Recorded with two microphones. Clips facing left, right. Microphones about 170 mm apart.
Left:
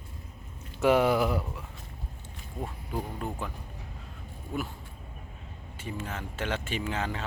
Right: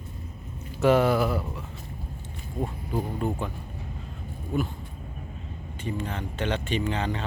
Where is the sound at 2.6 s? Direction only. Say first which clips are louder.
Right 5 dB; 5° right (ahead or behind).